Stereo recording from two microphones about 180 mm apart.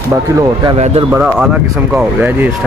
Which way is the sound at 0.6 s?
35° right (ahead or behind).